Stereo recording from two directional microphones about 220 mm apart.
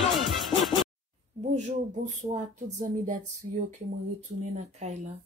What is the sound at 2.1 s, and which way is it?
Speech, 35° right (ahead or behind).